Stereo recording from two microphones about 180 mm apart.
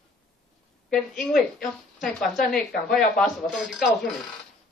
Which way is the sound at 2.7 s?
50° left (ahead or behind).